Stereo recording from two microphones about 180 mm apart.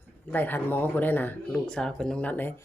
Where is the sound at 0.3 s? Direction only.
10° left (ahead or behind).